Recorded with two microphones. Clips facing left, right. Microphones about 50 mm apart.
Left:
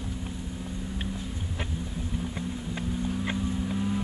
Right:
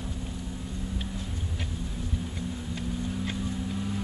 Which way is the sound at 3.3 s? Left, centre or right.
Centre.